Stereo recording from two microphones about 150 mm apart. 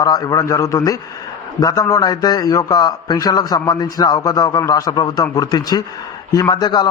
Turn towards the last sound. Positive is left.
turn(degrees=30)  # may be behind; listen again after turning